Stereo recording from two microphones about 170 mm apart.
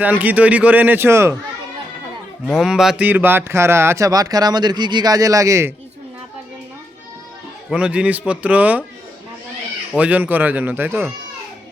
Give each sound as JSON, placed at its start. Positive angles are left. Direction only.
{"t": 0.0, "sound": "a man's voice", "side_deg": -10}
{"t": 2.6, "sound": "speech", "side_deg": 0}
{"t": 7.7, "sound": "a man's voice", "side_deg": -5}
{"t": 10.0, "sound": "a man's voice", "side_deg": -10}